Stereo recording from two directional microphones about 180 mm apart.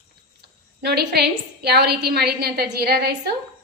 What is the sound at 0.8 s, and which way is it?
A woman's voice, 65° right (ahead or behind).